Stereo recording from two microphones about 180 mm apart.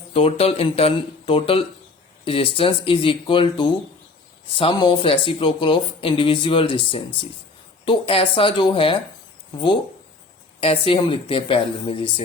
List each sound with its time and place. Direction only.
0.1 s a woman's voice: 35° left (ahead or behind)
10.6 s speech: 30° left (ahead or behind)